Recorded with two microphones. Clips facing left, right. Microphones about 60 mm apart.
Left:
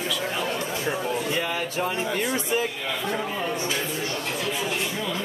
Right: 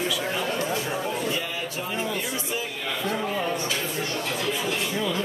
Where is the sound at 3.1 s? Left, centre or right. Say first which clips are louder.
Right 2 dB; centre.